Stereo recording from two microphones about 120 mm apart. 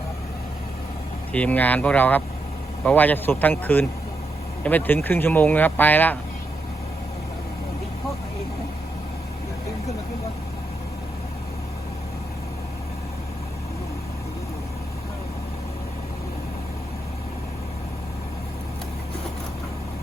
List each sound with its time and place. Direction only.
1.3 s speech: 10° left (ahead or behind)